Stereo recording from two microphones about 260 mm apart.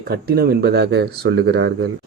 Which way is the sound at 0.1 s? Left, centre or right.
Right.